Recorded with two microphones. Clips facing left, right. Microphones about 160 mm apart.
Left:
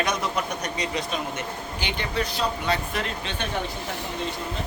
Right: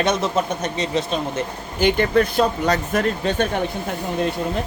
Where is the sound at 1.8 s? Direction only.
50° right (ahead or behind).